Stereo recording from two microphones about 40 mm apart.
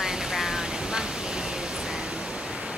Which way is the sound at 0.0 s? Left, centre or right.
Centre.